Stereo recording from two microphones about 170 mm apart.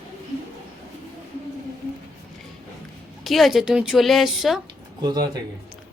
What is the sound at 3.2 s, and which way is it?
A woman's voice, centre (ahead or behind).